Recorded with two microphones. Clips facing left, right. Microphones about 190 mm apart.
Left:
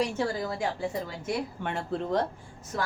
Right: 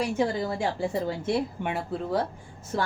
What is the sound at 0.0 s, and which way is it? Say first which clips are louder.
Speech: right 2 dB; 10° right (ahead or behind).